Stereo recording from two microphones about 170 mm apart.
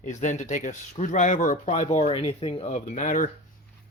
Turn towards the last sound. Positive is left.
turn(degrees=45)  # may be behind; listen again after turning